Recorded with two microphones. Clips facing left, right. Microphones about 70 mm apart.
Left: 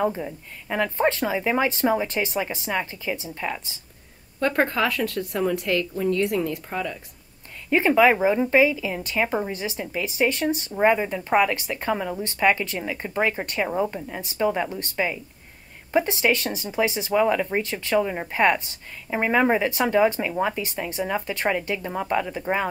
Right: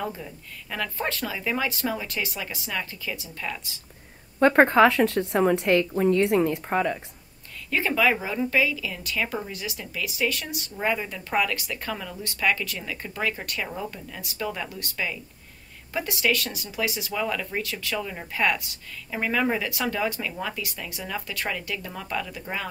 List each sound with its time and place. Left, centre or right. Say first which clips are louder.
0.0 s a woman's voice: left 8 dB; left
4.4 s a woman's voice: right 6 dB; centre
7.7 s a woman's voice: left 6 dB; left